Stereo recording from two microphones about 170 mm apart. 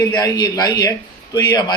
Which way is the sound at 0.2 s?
20° left (ahead or behind).